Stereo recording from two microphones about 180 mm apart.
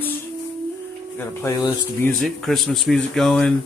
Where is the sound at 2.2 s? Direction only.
Centre (ahead or behind).